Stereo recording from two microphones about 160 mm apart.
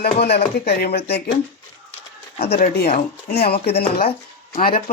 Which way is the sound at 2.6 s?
75° left (ahead or behind).